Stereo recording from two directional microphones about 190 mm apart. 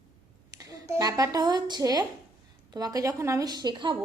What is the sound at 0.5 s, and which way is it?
A woman's voice, 20° right (ahead or behind).